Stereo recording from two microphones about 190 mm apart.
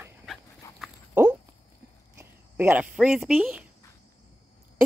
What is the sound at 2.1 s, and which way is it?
Speech, 10° right (ahead or behind).